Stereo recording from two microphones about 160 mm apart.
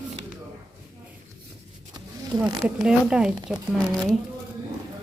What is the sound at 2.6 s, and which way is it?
Speech, 5° right (ahead or behind).